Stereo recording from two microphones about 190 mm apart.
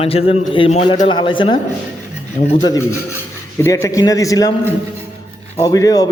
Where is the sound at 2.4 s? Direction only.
35° left (ahead or behind).